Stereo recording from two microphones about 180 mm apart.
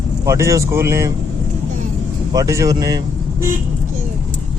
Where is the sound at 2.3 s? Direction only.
20° right (ahead or behind).